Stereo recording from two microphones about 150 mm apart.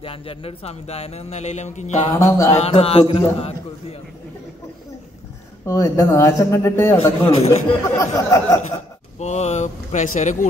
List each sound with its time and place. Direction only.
0.0 s speech: 40° left (ahead or behind)
2.1 s speech: 20° left (ahead or behind)
2.5 s speech: 45° left (ahead or behind)
5.7 s speech: 20° left (ahead or behind)
7.0 s speech: 45° left (ahead or behind)
7.9 s speech: 20° left (ahead or behind)
8.6 s speech: 50° left (ahead or behind)